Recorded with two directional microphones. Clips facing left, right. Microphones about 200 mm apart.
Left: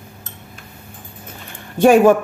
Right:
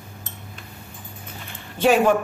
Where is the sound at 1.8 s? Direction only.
50° left (ahead or behind).